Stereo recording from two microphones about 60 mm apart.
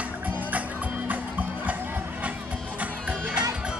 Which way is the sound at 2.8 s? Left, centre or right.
Right.